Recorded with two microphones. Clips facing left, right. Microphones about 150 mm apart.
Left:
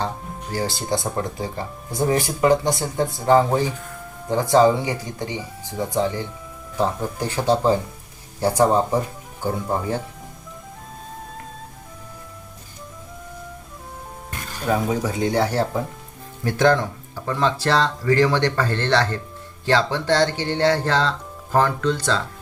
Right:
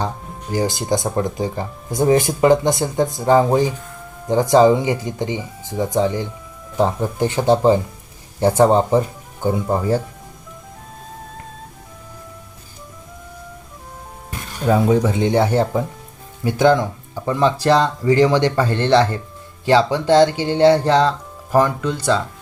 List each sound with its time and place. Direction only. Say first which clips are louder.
0.5 s speech: right 5 dB; 15° right (ahead or behind)
14.7 s speech: right 6 dB; 30° right (ahead or behind)
16.4 s speech: right 3 dB; 10° right (ahead or behind)